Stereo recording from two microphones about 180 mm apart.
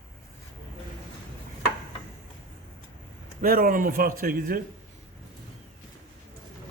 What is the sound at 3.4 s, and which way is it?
Speech, 50° right (ahead or behind).